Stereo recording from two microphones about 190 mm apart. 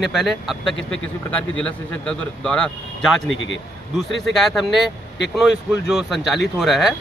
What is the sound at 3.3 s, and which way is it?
Speech, 85° left.